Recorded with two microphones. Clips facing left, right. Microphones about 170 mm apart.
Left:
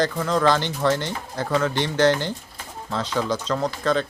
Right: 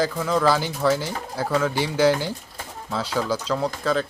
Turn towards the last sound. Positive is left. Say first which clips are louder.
# left 1 dB
turn(degrees=-5)  # may be behind; listen again after turning